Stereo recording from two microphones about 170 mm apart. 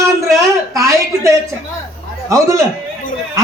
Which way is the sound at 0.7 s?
20° right (ahead or behind).